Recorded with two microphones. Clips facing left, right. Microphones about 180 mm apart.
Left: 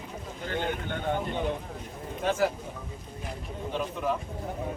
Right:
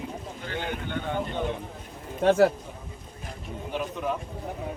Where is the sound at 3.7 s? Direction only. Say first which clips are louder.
Even; centre (ahead or behind).